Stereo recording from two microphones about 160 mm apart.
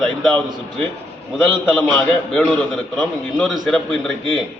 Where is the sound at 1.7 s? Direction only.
5° left (ahead or behind).